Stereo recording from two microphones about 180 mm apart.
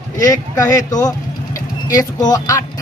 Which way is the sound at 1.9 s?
20° left (ahead or behind).